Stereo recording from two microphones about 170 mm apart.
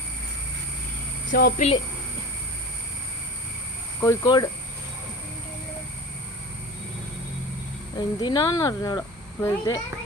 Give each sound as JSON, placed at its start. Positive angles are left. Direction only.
{"t": 1.4, "sound": "speech", "side_deg": 65}
{"t": 4.0, "sound": "speech", "side_deg": 25}
{"t": 7.9, "sound": "speech", "side_deg": 25}